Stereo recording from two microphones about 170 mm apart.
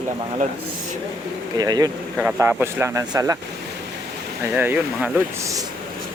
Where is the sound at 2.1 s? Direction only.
10° right (ahead or behind).